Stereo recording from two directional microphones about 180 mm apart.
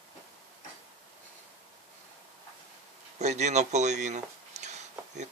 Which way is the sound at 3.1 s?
40° right (ahead or behind).